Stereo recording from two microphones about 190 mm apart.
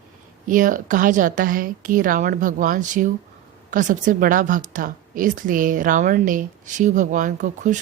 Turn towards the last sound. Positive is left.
turn(degrees=-40)  # may be behind; listen again after turning